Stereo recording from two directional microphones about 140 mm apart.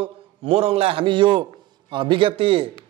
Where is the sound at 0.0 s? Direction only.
45° right (ahead or behind).